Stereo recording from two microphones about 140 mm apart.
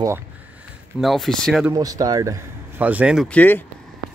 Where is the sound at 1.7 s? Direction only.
25° right (ahead or behind).